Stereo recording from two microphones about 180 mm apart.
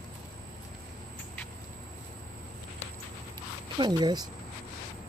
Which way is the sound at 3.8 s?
25° right (ahead or behind).